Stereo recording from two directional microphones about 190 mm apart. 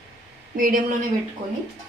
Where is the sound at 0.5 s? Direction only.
45° right (ahead or behind).